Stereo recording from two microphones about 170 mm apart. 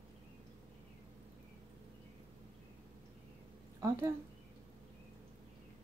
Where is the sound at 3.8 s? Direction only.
15° right (ahead or behind).